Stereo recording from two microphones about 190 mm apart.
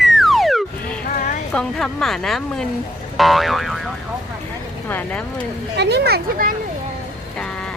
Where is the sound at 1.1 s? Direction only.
45° left (ahead or behind).